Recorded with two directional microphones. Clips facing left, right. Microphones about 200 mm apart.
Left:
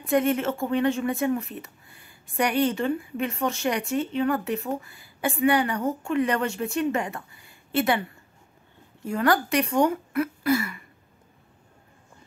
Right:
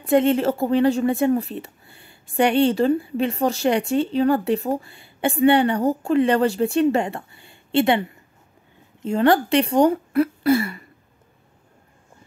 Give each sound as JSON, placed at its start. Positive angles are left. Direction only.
{"t": 0.0, "sound": "speech", "side_deg": -30}